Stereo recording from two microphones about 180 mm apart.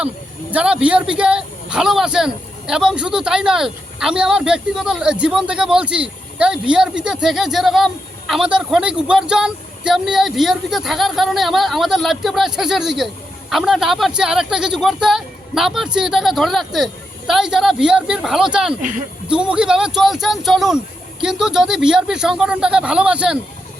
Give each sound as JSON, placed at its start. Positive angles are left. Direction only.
{"t": 0.5, "sound": "speech", "side_deg": -5}
{"t": 18.8, "sound": "speech", "side_deg": -45}
{"t": 19.3, "sound": "speech", "side_deg": -5}